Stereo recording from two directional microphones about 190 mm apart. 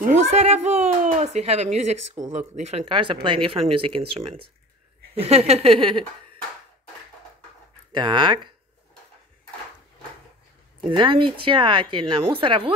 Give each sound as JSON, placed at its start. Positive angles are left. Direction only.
{"t": 0.0, "sound": "speech", "side_deg": -35}
{"t": 7.9, "sound": "speech", "side_deg": -25}
{"t": 10.9, "sound": "speech", "side_deg": -25}